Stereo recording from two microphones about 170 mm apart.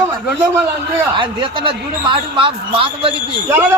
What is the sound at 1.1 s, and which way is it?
Speech, 30° right (ahead or behind).